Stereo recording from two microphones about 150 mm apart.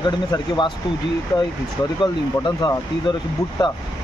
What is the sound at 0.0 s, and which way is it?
Speech, 30° left (ahead or behind).